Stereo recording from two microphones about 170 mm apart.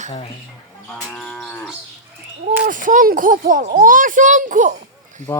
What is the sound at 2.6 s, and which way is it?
A child's voice, 50° right (ahead or behind).